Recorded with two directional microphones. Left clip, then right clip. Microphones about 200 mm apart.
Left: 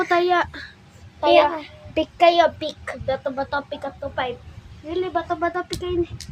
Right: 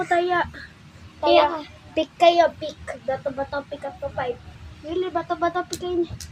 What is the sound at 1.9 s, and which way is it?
A child's voice, 30° left (ahead or behind).